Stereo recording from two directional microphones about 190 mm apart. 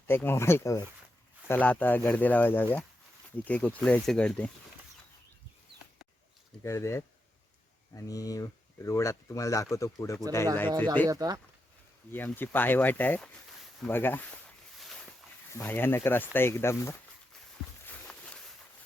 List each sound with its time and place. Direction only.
0.1 s speech: 10° left (ahead or behind)
6.6 s speech: 15° left (ahead or behind)
11.1 s speech: 20° right (ahead or behind)
12.1 s speech: 10° left (ahead or behind)
13.8 s a sound: 10° left (ahead or behind)
15.5 s speech: 10° left (ahead or behind)
17.8 s a sound: 5° left (ahead or behind)